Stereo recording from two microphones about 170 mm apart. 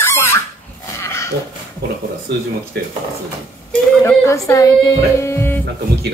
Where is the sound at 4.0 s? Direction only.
15° left (ahead or behind).